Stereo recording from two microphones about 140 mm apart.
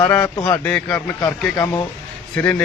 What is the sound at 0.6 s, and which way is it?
Speech, 10° left (ahead or behind).